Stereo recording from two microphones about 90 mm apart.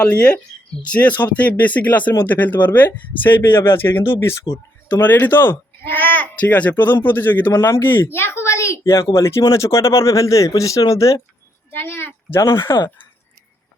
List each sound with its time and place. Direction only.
0.0 s speech: 15° left (ahead or behind); by 4.4 s 30° left (ahead or behind)
4.5 s speech: 20° left (ahead or behind)
11.7 s a child's voice: 25° left (ahead or behind)